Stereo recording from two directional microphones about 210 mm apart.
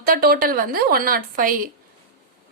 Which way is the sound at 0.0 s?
45° right (ahead or behind).